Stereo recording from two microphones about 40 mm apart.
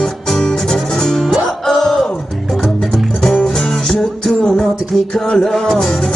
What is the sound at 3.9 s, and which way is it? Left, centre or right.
Music, centre.